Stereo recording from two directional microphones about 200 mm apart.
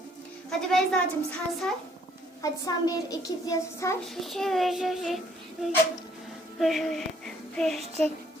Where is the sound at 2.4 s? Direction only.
15° left (ahead or behind).